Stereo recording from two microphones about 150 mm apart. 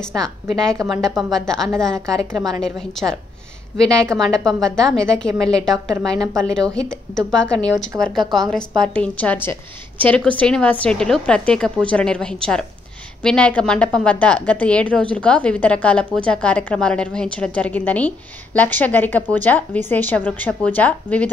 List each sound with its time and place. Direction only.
0.2 s a woman's voice: 5° left (ahead or behind)
6.1 s a woman's voice: 20° right (ahead or behind)
6.5 s a woman's voice: 5° left (ahead or behind)